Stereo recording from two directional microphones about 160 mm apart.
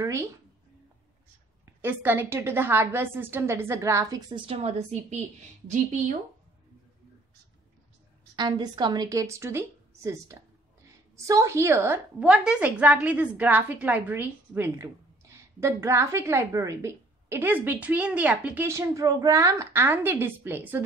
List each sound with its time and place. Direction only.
1.8 s a woman's voice: 15° right (ahead or behind); by 5.2 s 40° right (ahead or behind)
8.4 s a woman's voice: 25° right (ahead or behind); by 20.8 s 10° right (ahead or behind)